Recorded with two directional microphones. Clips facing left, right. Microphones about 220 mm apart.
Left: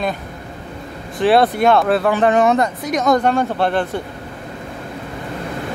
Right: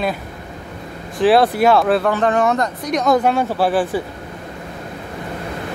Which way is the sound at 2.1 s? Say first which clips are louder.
Left 3 dB; 15° left (ahead or behind).